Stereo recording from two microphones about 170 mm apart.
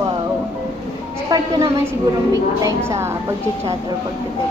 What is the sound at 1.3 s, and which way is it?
A woman's voice, 20° right (ahead or behind).